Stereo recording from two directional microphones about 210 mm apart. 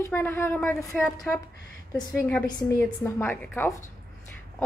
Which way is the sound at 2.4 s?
10° left (ahead or behind).